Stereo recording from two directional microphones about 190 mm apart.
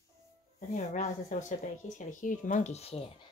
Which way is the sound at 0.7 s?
40° left (ahead or behind).